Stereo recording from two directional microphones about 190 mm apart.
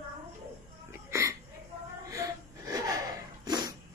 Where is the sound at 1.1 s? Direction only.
15° right (ahead or behind).